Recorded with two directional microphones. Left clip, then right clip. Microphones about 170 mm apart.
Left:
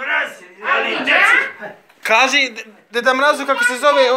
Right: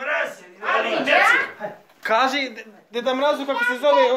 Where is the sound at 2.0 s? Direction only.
5° right (ahead or behind).